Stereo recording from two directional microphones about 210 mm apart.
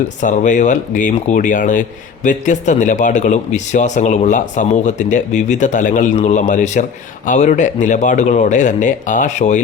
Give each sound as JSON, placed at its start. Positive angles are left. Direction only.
{"t": 0.2, "sound": "speech", "side_deg": 35}